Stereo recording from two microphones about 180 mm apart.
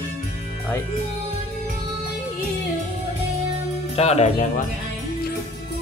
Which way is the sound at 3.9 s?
35° left (ahead or behind).